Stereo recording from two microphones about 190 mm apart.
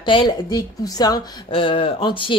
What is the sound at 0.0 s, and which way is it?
Speech, 25° left (ahead or behind).